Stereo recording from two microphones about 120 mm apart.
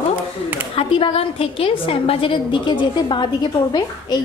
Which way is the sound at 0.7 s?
50° left (ahead or behind).